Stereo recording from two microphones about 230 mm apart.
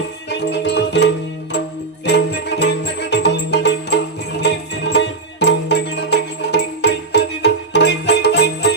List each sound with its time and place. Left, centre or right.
0.3 s music: left
2.0 s music: left